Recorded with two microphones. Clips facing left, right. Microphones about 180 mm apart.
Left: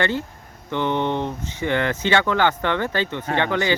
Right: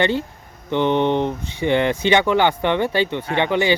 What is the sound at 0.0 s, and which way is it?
Speech, 20° right (ahead or behind).